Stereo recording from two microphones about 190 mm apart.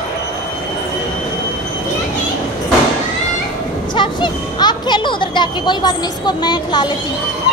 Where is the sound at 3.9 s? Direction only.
25° left (ahead or behind).